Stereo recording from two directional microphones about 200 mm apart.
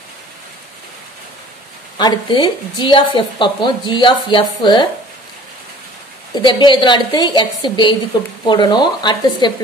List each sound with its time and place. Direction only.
2.0 s speech: 20° left (ahead or behind)
6.4 s speech: 25° left (ahead or behind)